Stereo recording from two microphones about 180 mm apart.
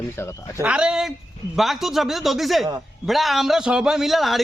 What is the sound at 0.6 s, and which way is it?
A man's voice, 5° right (ahead or behind).